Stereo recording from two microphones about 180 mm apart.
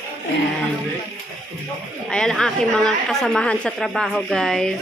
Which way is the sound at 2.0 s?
5° left (ahead or behind).